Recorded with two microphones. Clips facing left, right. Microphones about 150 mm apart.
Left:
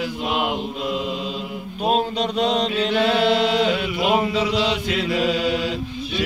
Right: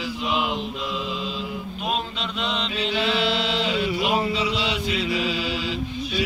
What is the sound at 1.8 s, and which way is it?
Chant, 40° left (ahead or behind).